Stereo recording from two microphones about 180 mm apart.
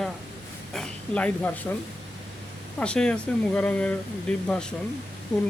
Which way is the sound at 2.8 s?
5° left (ahead or behind).